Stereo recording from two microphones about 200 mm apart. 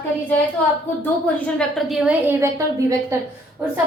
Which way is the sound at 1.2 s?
Centre (ahead or behind).